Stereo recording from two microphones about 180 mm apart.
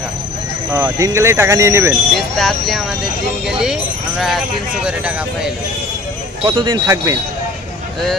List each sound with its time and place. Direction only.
0.7 s speech: 15° right (ahead or behind)
2.1 s speech: centre (ahead or behind)
3.6 s sheep: centre (ahead or behind)
4.8 s speech: 5° right (ahead or behind)
6.4 s speech: 25° right (ahead or behind)